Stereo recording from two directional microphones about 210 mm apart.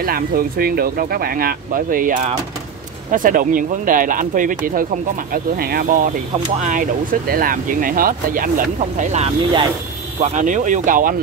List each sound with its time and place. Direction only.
0.0 s speech: 45° right (ahead or behind); by 9.7 s 25° right (ahead or behind)
10.2 s speech: 35° right (ahead or behind)